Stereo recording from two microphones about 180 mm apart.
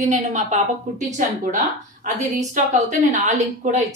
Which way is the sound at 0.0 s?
40° right (ahead or behind).